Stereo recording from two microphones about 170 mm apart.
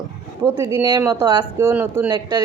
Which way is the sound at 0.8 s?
25° right (ahead or behind).